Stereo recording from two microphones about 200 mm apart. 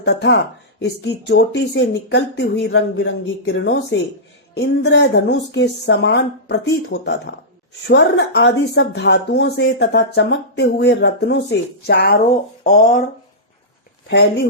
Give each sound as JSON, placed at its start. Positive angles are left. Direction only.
{"t": 0.0, "sound": "speech", "side_deg": 60}